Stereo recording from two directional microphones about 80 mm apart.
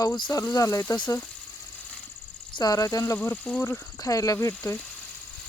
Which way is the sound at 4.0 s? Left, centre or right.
Left.